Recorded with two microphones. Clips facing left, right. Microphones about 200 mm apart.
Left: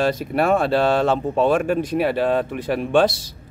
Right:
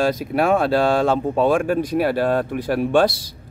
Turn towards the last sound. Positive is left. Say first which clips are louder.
# right 1 dB
turn(degrees=-10)  # may be behind; listen again after turning